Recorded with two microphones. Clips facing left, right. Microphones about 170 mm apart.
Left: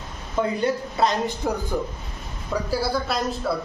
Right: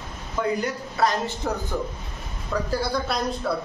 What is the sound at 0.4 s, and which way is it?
Speech, 25° left (ahead or behind).